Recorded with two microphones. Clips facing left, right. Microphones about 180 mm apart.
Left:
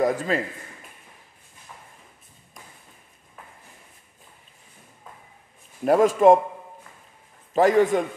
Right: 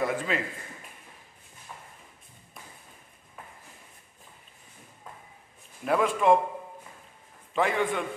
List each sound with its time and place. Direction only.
0.0 s a man's voice: 40° left (ahead or behind)
5.9 s a man's voice: 40° left (ahead or behind)
7.5 s a man's voice: 40° left (ahead or behind)